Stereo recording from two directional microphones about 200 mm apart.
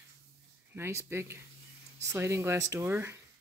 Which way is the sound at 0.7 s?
15° right (ahead or behind).